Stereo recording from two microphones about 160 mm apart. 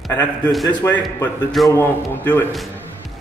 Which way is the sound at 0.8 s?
15° left (ahead or behind).